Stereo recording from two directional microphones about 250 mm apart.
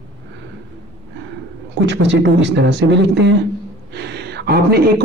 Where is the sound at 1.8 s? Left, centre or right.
Right.